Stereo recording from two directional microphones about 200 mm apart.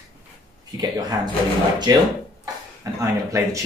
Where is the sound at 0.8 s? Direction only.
20° right (ahead or behind).